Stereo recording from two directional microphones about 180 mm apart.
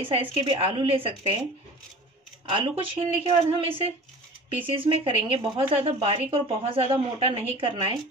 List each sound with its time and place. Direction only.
0.0 s a woman's voice: 30° right (ahead or behind)
2.5 s speech: 30° right (ahead or behind)